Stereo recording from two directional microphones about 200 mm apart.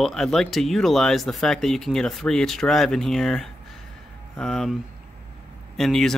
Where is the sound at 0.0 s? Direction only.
Centre (ahead or behind).